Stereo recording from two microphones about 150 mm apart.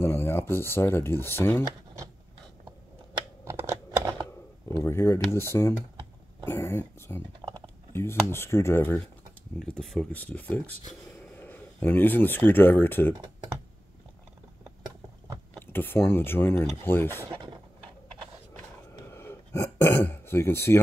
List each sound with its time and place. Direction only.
0.0 s speech: 15° left (ahead or behind)
3.4 s computer keyboard: 20° right (ahead or behind)
4.6 s speech: 15° left (ahead or behind)
9.6 s speech: 5° left (ahead or behind)
15.6 s speech: 15° left (ahead or behind)
17.3 s a sound: 35° right (ahead or behind)
19.0 s throat clearing: 15° left (ahead or behind)